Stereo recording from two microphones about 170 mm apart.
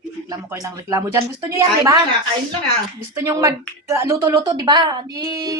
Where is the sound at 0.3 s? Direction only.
20° right (ahead or behind).